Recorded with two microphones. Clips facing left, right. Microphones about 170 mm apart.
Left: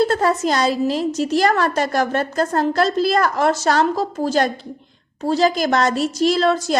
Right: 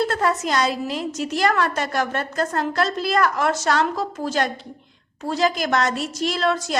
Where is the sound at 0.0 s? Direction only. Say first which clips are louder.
Left 4 dB; 35° left (ahead or behind).